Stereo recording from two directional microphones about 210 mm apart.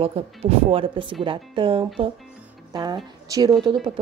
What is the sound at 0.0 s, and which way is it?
Speech, 30° right (ahead or behind).